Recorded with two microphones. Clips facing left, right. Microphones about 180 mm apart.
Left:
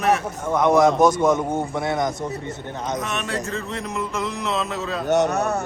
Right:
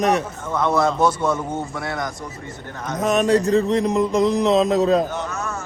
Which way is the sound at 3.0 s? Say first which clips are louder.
Right 10 dB; 40° right (ahead or behind).